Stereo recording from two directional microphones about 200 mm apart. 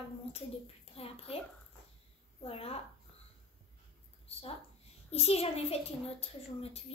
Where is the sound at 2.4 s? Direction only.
30° left (ahead or behind).